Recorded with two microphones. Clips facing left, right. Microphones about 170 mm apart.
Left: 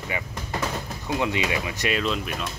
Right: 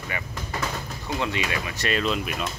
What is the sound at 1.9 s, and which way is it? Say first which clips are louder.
Speech: right 2 dB; 5° right (ahead or behind).